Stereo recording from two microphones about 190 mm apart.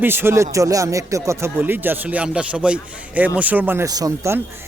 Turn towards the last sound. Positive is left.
turn(degrees=-15)  # may be behind; listen again after turning